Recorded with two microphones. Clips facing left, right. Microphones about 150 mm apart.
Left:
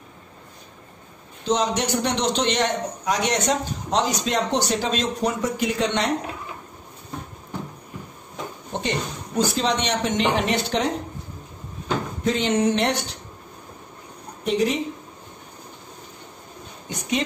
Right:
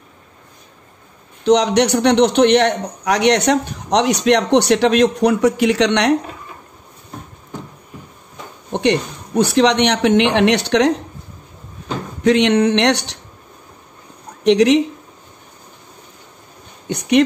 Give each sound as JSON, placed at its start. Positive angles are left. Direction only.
{"t": 1.4, "sound": "speech", "side_deg": -70}
{"t": 9.4, "sound": "speech", "side_deg": -70}
{"t": 12.2, "sound": "speech", "side_deg": -75}
{"t": 14.4, "sound": "speech", "side_deg": -85}